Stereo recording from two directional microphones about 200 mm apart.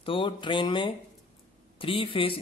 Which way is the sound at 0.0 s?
25° left (ahead or behind).